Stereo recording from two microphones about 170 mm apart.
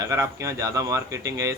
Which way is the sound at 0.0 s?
15° right (ahead or behind).